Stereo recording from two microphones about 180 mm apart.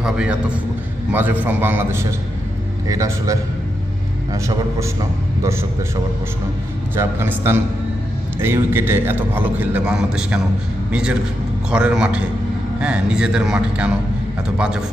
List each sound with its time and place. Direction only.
0.0 s a man's voice: 5° right (ahead or behind)
7.0 s a man's voice: 15° right (ahead or behind)